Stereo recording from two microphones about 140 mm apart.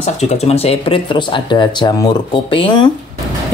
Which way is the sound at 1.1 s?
35° left (ahead or behind).